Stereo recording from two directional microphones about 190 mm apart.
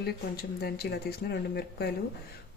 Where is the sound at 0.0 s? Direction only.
55° left (ahead or behind).